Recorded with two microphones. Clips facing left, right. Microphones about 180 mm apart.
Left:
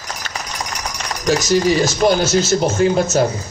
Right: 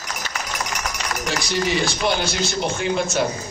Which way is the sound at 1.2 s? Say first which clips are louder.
Left 9 dB; 40° left (ahead or behind).